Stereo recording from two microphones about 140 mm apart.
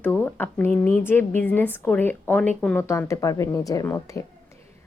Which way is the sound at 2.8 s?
20° left (ahead or behind).